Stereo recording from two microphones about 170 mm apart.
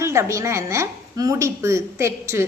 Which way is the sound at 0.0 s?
15° right (ahead or behind).